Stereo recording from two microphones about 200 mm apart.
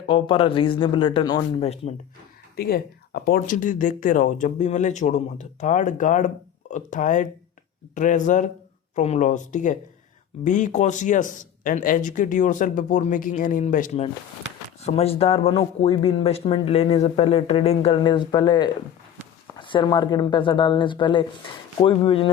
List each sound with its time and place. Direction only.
0.1 s speech: 25° left (ahead or behind)
2.6 s speech: 50° left (ahead or behind); by 22.3 s 25° left (ahead or behind)